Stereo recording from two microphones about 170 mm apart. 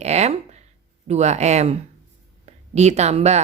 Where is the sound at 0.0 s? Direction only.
40° right (ahead or behind).